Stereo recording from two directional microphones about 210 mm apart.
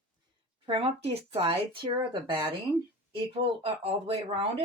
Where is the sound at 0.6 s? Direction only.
25° right (ahead or behind).